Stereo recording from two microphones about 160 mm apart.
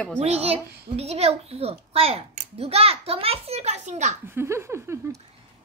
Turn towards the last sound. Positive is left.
turn(degrees=-15)  # may be behind; listen again after turning